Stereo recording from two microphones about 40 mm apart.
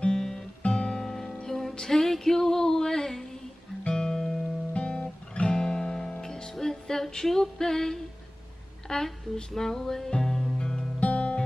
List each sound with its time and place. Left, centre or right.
0.0 s music: centre
4.7 s guitar: left
5.5 s music: centre
11.0 s music: left